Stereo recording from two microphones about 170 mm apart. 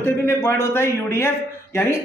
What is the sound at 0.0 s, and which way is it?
A man's voice, 15° left (ahead or behind).